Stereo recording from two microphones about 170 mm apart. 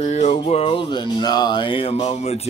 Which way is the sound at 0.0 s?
40° left (ahead or behind).